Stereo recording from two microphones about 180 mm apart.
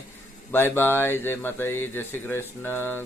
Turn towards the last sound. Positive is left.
turn(degrees=10)  # may be behind; listen again after turning